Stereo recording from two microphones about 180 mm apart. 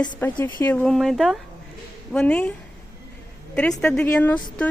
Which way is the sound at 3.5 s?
5° left (ahead or behind).